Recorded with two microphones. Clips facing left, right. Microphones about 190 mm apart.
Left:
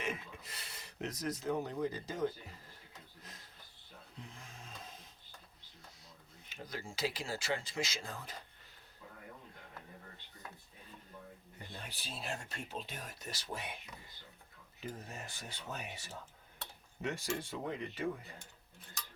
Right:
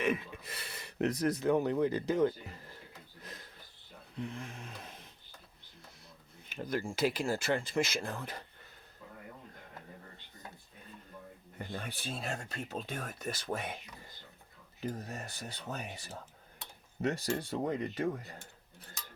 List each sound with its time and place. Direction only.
0.0 s speech: 60° right (ahead or behind)
3.2 s a sound: 65° right (ahead or behind)
6.5 s speech: 55° right (ahead or behind)
11.8 s speech: 55° right (ahead or behind)
14.8 s speech: 40° right (ahead or behind)